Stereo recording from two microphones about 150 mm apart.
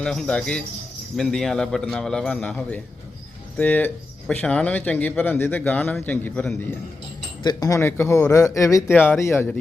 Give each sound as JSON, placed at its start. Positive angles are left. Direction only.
{"t": 0.0, "sound": "a man's voice", "side_deg": 5}
{"t": 7.4, "sound": "speech", "side_deg": 25}